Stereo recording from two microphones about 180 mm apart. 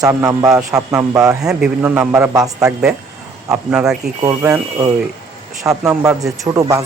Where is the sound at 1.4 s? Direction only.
5° right (ahead or behind); by 2.7 s 20° right (ahead or behind).